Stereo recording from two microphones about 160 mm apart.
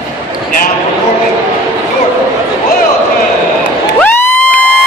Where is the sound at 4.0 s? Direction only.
10° left (ahead or behind).